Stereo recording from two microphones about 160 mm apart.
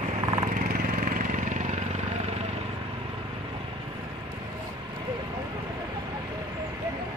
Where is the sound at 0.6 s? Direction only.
60° right (ahead or behind).